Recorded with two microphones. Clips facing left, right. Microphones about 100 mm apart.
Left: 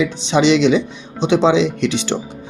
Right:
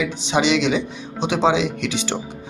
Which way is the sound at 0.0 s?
30° left (ahead or behind).